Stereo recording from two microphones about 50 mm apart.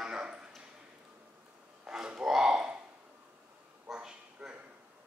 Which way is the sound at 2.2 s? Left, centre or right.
Centre.